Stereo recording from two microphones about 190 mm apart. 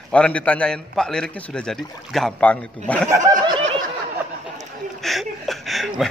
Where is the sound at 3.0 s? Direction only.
15° right (ahead or behind).